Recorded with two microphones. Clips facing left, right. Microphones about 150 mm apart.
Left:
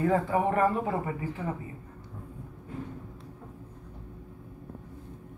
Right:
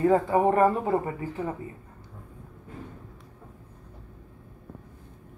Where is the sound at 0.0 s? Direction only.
30° right (ahead or behind).